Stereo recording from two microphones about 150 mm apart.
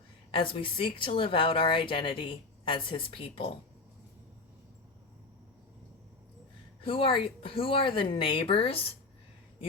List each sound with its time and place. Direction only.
0.3 s speech: 35° left (ahead or behind)
6.8 s speech: 35° left (ahead or behind)